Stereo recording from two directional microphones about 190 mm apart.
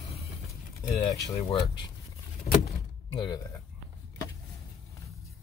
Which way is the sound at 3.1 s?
25° left (ahead or behind).